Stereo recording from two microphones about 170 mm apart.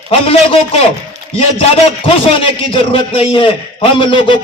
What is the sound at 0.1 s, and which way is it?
Speech, 35° left (ahead or behind).